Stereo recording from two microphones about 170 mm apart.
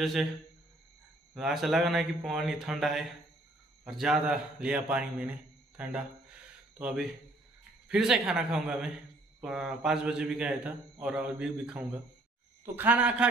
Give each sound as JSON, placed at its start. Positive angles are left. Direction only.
{"t": 0.0, "sound": "a man's voice", "side_deg": 0}
{"t": 1.3, "sound": "a man's voice", "side_deg": 0}